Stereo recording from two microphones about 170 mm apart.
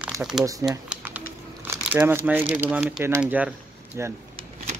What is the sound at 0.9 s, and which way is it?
Crumpling, 10° right (ahead or behind).